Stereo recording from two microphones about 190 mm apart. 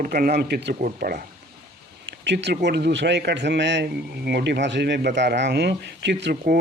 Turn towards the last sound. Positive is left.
turn(degrees=-65)  # may be behind; listen again after turning